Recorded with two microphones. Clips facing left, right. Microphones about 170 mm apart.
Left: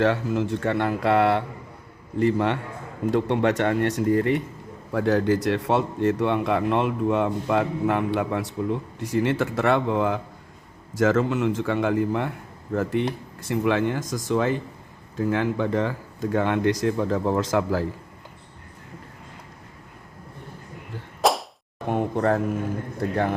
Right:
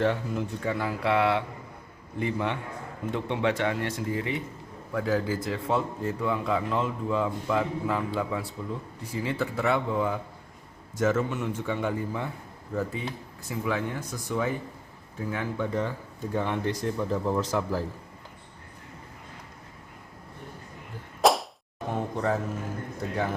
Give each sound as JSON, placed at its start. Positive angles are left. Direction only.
{"t": 0.0, "sound": "a man's voice", "side_deg": 90}
{"t": 10.9, "sound": "a man's voice", "side_deg": 90}
{"t": 21.2, "sound": "whip", "side_deg": 0}
{"t": 21.8, "sound": "a sound", "side_deg": 60}